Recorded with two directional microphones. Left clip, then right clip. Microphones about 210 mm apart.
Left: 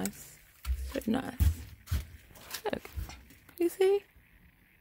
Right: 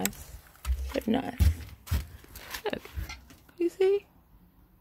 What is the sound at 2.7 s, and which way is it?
Dog, 15° left (ahead or behind).